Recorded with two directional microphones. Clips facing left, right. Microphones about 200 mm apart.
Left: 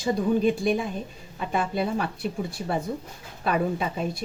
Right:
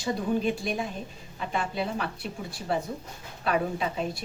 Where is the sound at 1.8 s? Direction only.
50° left (ahead or behind).